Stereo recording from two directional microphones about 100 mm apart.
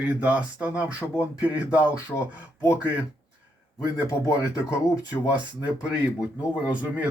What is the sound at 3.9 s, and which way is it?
Speech, 35° left (ahead or behind).